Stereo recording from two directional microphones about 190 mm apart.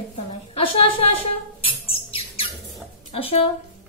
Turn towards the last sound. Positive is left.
turn(degrees=30)  # may be behind; listen again after turning